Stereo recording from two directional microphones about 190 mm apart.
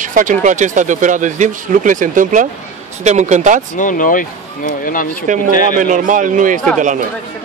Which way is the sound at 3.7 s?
45° left (ahead or behind).